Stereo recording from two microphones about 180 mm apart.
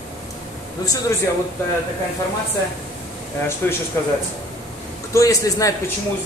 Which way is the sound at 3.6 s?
10° left (ahead or behind).